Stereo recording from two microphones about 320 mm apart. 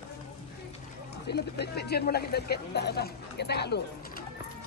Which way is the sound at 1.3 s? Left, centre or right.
Left.